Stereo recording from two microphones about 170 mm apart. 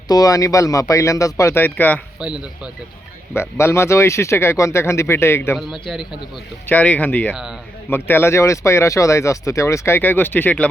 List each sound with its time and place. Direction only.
0.1 s speech: 20° left (ahead or behind)
3.3 s speech: 15° left (ahead or behind)
6.7 s speech: 10° left (ahead or behind)